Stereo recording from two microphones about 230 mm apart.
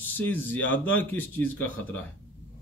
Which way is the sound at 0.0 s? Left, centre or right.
Centre.